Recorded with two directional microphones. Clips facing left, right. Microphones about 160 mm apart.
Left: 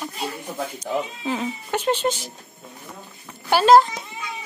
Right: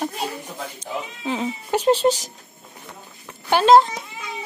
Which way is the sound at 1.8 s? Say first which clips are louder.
Right 5 dB; 35° right (ahead or behind).